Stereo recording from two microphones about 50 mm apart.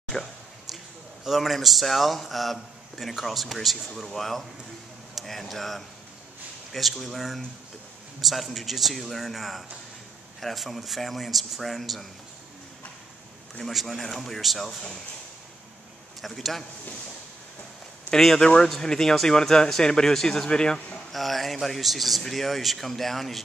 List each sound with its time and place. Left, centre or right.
0.1 s a sound: centre
1.2 s a man's voice: centre
13.6 s a man's voice: centre
16.2 s a man's voice: centre
18.1 s speech: centre
21.1 s a man's voice: centre